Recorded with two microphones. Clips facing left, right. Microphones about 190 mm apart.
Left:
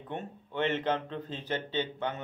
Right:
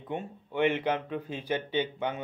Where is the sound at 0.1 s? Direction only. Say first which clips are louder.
Right 3 dB; 10° right (ahead or behind).